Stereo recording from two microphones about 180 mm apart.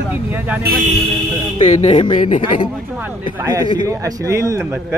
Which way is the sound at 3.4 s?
15° right (ahead or behind).